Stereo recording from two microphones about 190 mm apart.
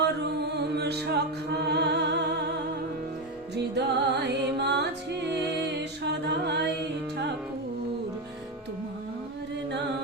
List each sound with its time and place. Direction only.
0.2 s music: 60° right (ahead or behind)
3.5 s music: 60° right (ahead or behind)